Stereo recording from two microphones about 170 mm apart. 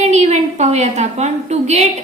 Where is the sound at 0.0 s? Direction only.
40° right (ahead or behind).